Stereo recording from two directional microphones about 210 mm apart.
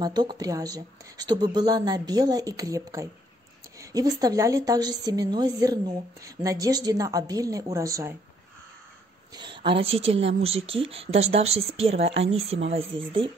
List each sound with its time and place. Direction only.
0.0 s a woman's voice: 20° right (ahead or behind)
9.3 s speech: 20° right (ahead or behind)